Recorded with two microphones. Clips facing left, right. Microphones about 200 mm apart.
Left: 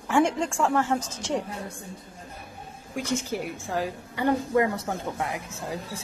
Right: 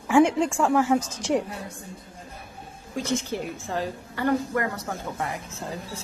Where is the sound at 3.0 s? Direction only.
10° left (ahead or behind).